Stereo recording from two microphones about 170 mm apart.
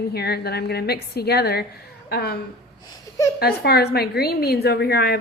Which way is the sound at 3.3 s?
70° left (ahead or behind).